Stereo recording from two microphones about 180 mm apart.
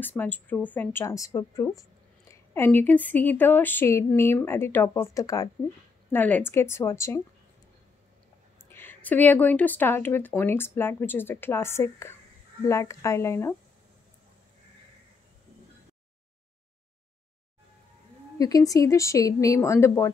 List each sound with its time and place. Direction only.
0.0 s a woman's voice: 10° left (ahead or behind)
8.6 s a woman's voice: 10° left (ahead or behind)
18.4 s a woman's voice: 20° left (ahead or behind)